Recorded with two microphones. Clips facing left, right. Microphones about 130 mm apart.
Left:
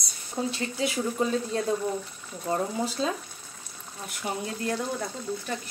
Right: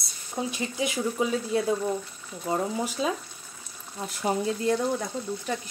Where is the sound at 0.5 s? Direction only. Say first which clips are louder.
Even; 15° right (ahead or behind).